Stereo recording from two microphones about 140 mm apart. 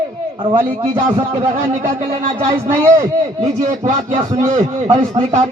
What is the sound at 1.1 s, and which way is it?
Speech, 50° right (ahead or behind).